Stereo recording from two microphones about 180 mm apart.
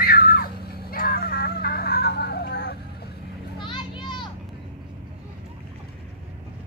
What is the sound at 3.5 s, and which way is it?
Children playing, 25° left (ahead or behind).